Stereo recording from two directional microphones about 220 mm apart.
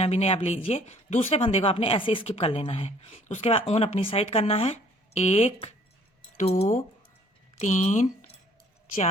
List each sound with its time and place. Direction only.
0.0 s speech: 30° left (ahead or behind)